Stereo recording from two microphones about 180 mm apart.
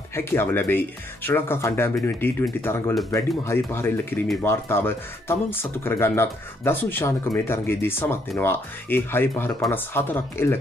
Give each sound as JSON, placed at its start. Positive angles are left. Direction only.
{"t": 0.1, "sound": "speech", "side_deg": 15}